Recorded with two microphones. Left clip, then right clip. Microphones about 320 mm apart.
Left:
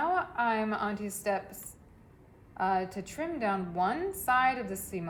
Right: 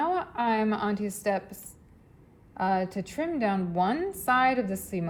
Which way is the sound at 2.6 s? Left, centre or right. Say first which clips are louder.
Right 3 dB; right.